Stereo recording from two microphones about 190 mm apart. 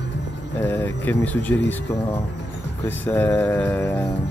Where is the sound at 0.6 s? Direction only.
10° left (ahead or behind).